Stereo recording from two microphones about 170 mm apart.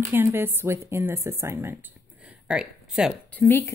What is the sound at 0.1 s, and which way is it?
A woman's voice, 15° right (ahead or behind).